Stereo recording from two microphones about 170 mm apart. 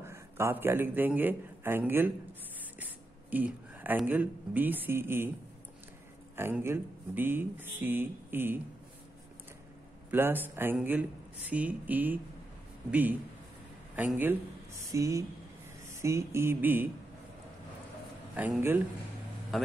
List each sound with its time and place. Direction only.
0.0 s a man's voice: 15° right (ahead or behind)
6.3 s speech: 15° right (ahead or behind)
10.1 s speech: 10° right (ahead or behind)
18.3 s speech: 10° right (ahead or behind)
19.5 s a man's voice: centre (ahead or behind)